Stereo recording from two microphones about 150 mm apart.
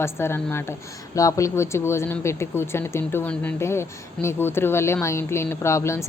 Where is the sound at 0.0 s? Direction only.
15° left (ahead or behind).